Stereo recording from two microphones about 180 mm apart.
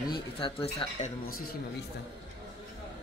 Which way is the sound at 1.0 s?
55° left (ahead or behind).